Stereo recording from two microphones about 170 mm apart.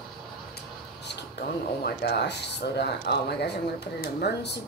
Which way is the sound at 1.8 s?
70° left (ahead or behind).